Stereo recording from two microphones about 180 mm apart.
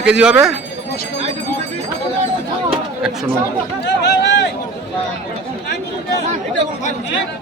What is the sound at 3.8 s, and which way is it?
Speech, 70° left (ahead or behind).